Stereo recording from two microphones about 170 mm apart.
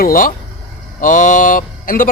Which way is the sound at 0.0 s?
55° left (ahead or behind).